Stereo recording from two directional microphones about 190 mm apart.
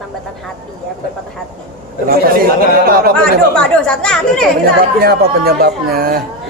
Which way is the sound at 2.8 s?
50° right (ahead or behind).